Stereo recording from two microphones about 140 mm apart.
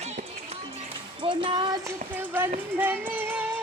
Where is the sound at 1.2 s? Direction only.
40° right (ahead or behind).